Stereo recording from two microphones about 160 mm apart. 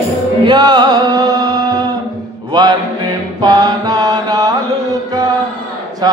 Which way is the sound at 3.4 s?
25° right (ahead or behind).